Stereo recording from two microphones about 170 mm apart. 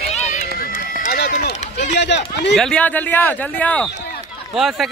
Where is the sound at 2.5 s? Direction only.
5° left (ahead or behind).